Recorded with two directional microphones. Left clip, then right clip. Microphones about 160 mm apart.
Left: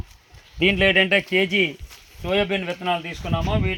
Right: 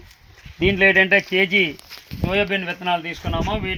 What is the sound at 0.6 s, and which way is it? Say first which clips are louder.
Speech: right 2 dB; 75° left (ahead or behind).